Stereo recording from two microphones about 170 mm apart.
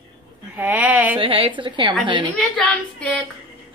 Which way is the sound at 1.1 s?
30° right (ahead or behind).